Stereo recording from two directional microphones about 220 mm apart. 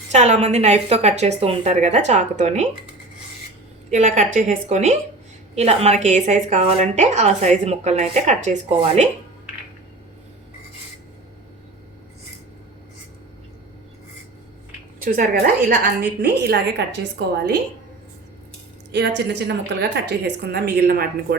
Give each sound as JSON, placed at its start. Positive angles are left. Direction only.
{"t": 0.1, "sound": "a woman's voice", "side_deg": -30}
{"t": 3.9, "sound": "a woman's voice", "side_deg": -35}
{"t": 15.0, "sound": "a woman's voice", "side_deg": -40}
{"t": 18.9, "sound": "a woman's voice", "side_deg": -50}